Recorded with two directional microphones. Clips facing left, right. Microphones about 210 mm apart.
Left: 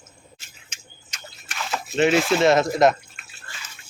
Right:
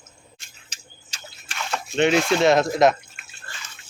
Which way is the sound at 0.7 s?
30° right (ahead or behind).